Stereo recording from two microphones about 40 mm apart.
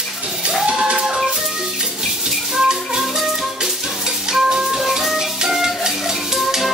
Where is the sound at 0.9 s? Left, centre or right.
Centre.